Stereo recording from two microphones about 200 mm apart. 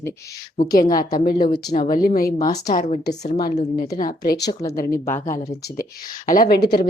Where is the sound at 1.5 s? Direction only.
35° left (ahead or behind).